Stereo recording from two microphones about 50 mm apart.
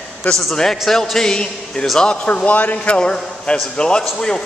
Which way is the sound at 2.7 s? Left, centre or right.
Left.